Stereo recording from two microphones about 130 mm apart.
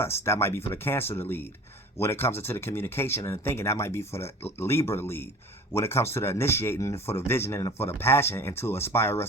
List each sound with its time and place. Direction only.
0.0 s speech: 20° left (ahead or behind)